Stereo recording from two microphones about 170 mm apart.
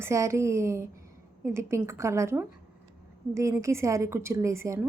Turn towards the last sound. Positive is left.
turn(degrees=-15)  # may be behind; listen again after turning